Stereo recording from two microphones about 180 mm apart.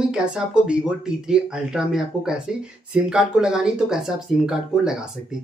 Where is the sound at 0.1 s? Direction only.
5° right (ahead or behind).